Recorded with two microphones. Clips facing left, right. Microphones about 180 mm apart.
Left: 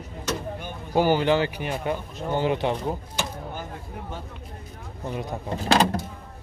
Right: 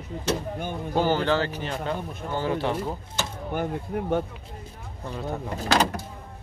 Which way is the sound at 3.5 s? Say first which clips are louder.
Right 8 dB; 60° right (ahead or behind).